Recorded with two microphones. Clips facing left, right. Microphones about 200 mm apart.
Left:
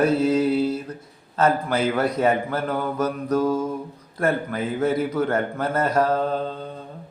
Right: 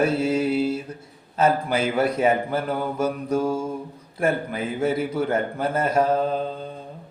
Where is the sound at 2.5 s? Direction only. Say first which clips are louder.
Even; 25° right (ahead or behind).